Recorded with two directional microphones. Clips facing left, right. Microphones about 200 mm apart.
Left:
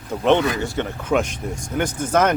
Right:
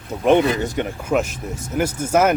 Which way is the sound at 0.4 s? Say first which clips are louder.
Right 2 dB; 20° right (ahead or behind).